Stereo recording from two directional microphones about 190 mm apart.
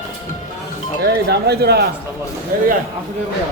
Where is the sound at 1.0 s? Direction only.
60° right (ahead or behind).